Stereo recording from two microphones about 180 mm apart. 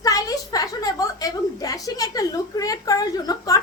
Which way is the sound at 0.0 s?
20° left (ahead or behind).